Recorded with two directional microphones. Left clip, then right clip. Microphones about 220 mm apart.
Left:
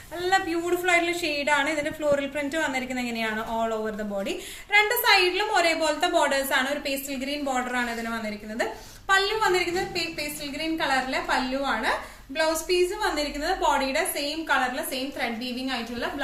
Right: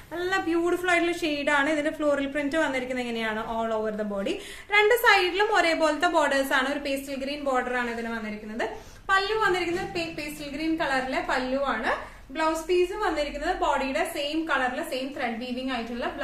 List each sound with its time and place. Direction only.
0.2 s a woman's voice: 30° right (ahead or behind)
9.0 s a woman's voice: 20° right (ahead or behind)